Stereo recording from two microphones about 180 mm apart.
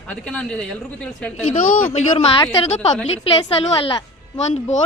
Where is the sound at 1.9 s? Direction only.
35° left (ahead or behind).